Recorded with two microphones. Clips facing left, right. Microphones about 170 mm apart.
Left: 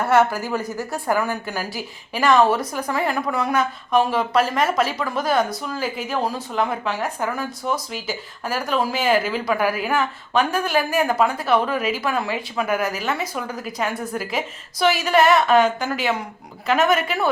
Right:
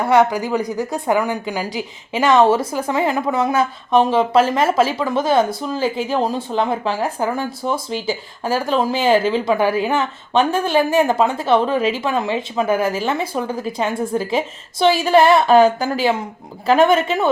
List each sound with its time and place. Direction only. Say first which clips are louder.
0.0 s speech: right 3 dB; 15° right (ahead or behind)